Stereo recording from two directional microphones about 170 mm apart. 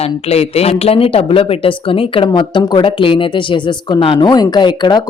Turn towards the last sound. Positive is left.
turn(degrees=25)  # may be behind; listen again after turning